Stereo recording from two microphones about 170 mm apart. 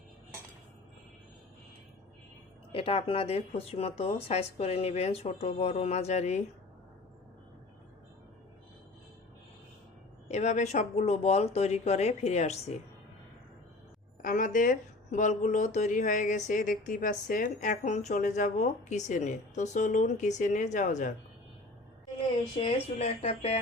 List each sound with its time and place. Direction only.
2.7 s speech: 35° left (ahead or behind)
10.2 s speech: 45° left (ahead or behind)
14.2 s speech: 55° left (ahead or behind)
22.5 s speech: 35° left (ahead or behind)